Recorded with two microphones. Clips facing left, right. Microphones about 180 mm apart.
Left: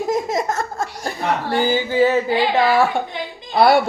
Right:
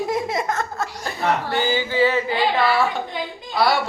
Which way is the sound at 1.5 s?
45° left (ahead or behind).